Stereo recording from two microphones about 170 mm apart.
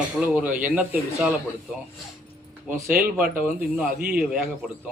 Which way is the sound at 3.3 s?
10° right (ahead or behind).